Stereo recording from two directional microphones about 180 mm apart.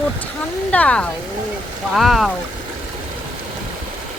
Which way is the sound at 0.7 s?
5° left (ahead or behind).